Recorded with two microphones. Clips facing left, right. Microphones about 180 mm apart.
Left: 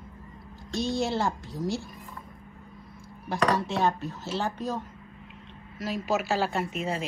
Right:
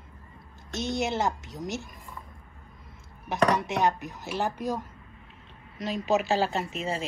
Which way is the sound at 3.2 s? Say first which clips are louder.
Right 1 dB; 20° right (ahead or behind).